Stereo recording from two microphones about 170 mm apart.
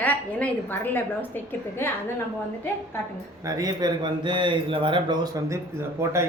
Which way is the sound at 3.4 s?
20° right (ahead or behind).